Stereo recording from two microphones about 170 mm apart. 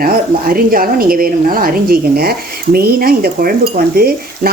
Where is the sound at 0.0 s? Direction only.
55° right (ahead or behind).